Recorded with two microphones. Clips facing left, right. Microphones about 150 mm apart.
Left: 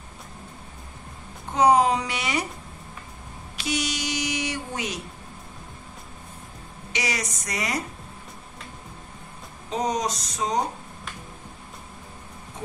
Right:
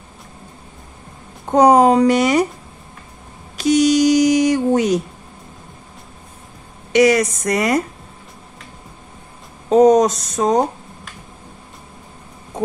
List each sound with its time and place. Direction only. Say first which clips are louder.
1.4 s speech: right 8 dB; 45° right (ahead or behind)
3.5 s a sound: right 16 dB; 40° right (ahead or behind)
6.9 s speech: right 17 dB; 55° right (ahead or behind)
9.7 s speech: right 15 dB; 50° right (ahead or behind)